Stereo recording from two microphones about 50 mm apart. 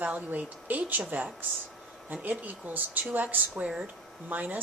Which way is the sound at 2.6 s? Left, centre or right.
Right.